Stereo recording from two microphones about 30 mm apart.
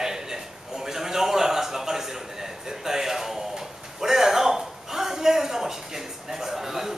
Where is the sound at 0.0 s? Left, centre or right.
Centre.